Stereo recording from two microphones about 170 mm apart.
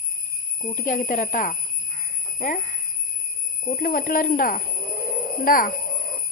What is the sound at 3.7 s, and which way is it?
Speech, 55° left (ahead or behind).